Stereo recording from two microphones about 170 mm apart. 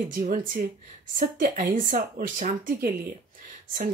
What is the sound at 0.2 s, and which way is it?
Speech, 50° right (ahead or behind).